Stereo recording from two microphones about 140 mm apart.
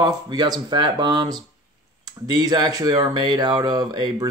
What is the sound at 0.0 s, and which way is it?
Speech, 30° right (ahead or behind).